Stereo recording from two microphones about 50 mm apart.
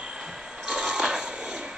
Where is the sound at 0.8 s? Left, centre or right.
Centre.